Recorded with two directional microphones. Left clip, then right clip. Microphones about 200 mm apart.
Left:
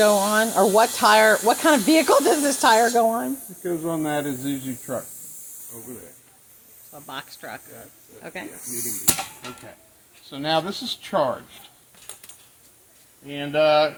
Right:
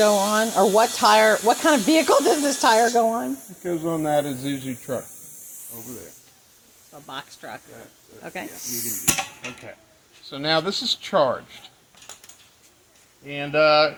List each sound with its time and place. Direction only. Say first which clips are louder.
0.0 s speech: left 1 dB; centre (ahead or behind)
3.6 s speech: right 1 dB; 35° right (ahead or behind)
6.9 s speech: even; centre (ahead or behind)
8.2 s speech: right 1 dB; 10° right (ahead or behind)
10.2 s speech: right 1 dB; 25° right (ahead or behind)
13.2 s speech: right 1 dB; 30° right (ahead or behind)